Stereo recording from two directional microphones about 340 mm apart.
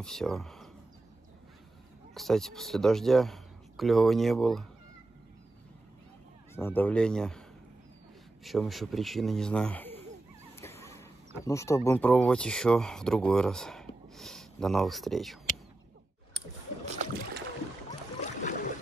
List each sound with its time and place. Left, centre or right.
0.0 s speech: centre
2.1 s speech: centre
6.5 s speech: centre
8.5 s speech: centre
10.6 s a sound: centre
11.4 s speech: centre
16.8 s boat: right
18.2 s a sound: left